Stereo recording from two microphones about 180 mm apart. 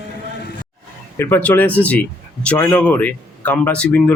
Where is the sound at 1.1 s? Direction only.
10° left (ahead or behind).